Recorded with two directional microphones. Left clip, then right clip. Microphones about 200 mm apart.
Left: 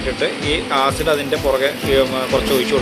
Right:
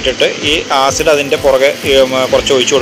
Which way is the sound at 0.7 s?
20° right (ahead or behind).